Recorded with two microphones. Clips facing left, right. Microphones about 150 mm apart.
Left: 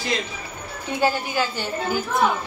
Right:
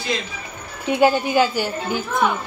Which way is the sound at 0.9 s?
15° right (ahead or behind).